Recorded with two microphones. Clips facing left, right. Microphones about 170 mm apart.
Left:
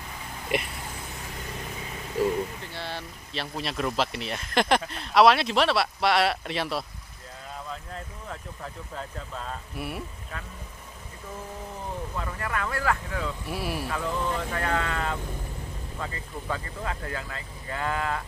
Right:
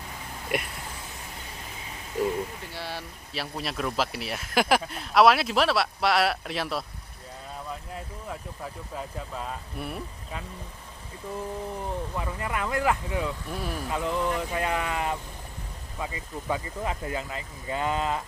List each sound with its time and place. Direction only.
2.7 s speech: 10° right (ahead or behind)
8.9 s speech: 10° right (ahead or behind)
9.8 s speech: 5° left (ahead or behind)
12.2 s speech: 15° right (ahead or behind)
13.5 s speech: 10° left (ahead or behind)
13.8 s speech: 20° right (ahead or behind)